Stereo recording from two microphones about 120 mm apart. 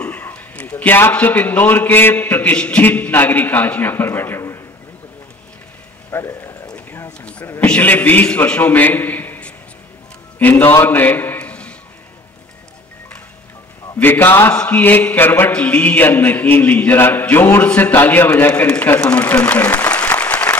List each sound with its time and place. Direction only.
0.0 s mantra: 10° left (ahead or behind)
6.0 s a sound: 20° left (ahead or behind)
7.1 s speech: 10° left (ahead or behind)
7.6 s mantra: 15° left (ahead or behind)
10.4 s a man's voice: 20° left (ahead or behind)
13.9 s mantra: 15° left (ahead or behind)